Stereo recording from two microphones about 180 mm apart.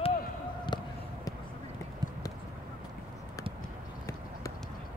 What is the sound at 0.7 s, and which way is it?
Basketball bounce, 25° left (ahead or behind).